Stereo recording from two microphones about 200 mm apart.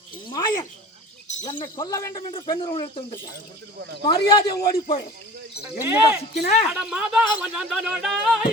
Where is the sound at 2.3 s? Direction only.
25° left (ahead or behind).